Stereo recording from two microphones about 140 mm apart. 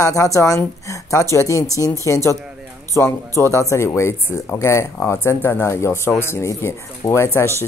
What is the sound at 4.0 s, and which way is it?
Speech, 20° left (ahead or behind).